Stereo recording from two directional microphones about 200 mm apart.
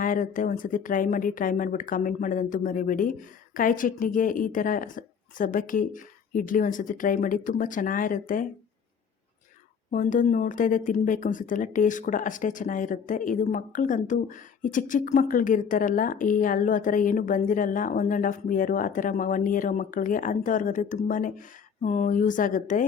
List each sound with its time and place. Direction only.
0.0 s speech: 40° left (ahead or behind)
9.9 s speech: 40° left (ahead or behind)